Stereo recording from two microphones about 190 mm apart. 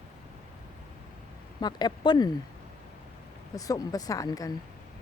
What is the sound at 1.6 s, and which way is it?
Speech, 20° left (ahead or behind).